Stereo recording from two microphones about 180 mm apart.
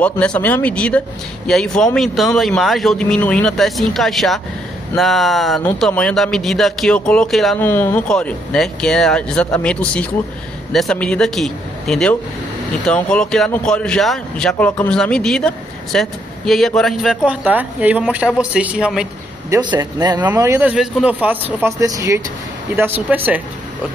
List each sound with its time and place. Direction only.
0.0 s speech: 5° left (ahead or behind)
19.5 s a man's voice: 25° right (ahead or behind)
20.2 s speech: 10° right (ahead or behind)